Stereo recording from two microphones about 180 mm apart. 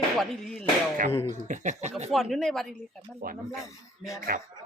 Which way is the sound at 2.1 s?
Centre (ahead or behind).